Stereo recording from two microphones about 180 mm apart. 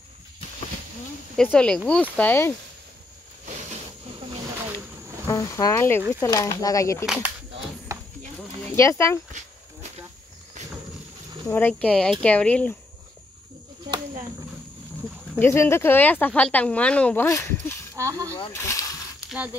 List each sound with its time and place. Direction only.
1.3 s speech: 5° left (ahead or behind)
4.7 s insect: 20° left (ahead or behind)
6.2 s speech: 15° left (ahead or behind)
7.9 s a sound: 15° right (ahead or behind)
8.4 s a sound: 15° left (ahead or behind)
11.4 s speech: 10° left (ahead or behind)
15.3 s speech: 15° left (ahead or behind)
17.9 s snake: 15° right (ahead or behind)
18.5 s snake: 15° left (ahead or behind)